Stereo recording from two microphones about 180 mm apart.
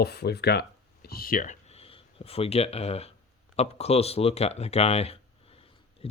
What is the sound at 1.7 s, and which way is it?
Speech, 30° left (ahead or behind).